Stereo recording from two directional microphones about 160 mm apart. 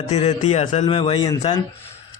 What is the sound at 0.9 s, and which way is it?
Music, 40° left (ahead or behind).